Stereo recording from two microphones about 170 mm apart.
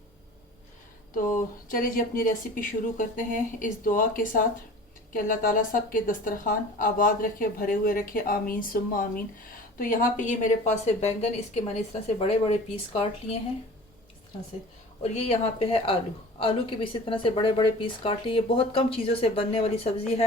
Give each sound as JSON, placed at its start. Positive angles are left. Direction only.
{"t": 1.1, "sound": "a woman's voice", "side_deg": 50}
{"t": 15.0, "sound": "a woman's voice", "side_deg": 40}